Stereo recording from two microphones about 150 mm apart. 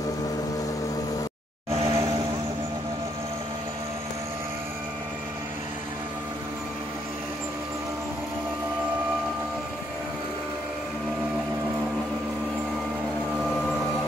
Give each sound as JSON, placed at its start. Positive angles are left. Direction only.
{"t": 1.9, "sound": "vehicle", "side_deg": -20}